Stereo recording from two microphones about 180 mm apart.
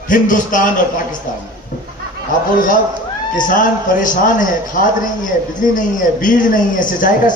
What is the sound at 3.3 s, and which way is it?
Speech, 45° left (ahead or behind).